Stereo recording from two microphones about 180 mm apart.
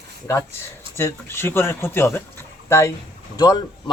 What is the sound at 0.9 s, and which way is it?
Speech, 15° left (ahead or behind).